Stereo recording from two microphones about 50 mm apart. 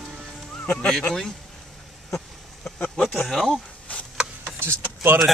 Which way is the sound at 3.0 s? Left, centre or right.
Centre.